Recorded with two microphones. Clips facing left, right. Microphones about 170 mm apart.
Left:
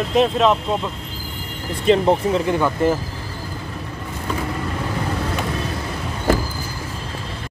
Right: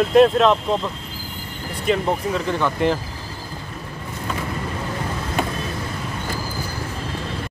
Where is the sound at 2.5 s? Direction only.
10° left (ahead or behind).